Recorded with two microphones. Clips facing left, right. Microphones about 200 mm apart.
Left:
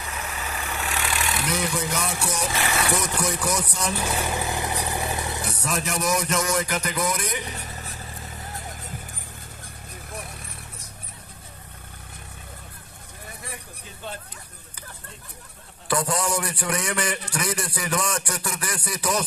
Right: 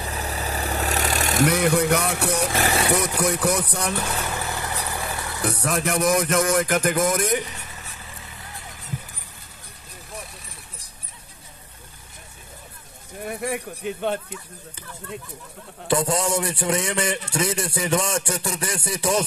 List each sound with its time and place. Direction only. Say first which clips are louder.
0.0 s vehicle: right 4 dB; 35° right (ahead or behind); by 2.6 s 60° right (ahead or behind)
2.6 s vehicle: right 4 dB; 35° right (ahead or behind)
3.2 s music: right 4 dB; 60° right (ahead or behind)
4.1 s vehicle: left 2 dB; 15° left (ahead or behind)
5.5 s music: right 7 dB; 60° right (ahead or behind)
7.5 s vehicle: left 4 dB; 40° left (ahead or behind)
13.2 s music: right 13 dB; 65° right (ahead or behind)
15.9 s a man's voice: right 3 dB; 25° right (ahead or behind)